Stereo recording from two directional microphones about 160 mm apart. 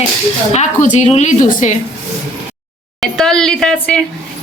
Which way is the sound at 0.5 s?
45° left (ahead or behind).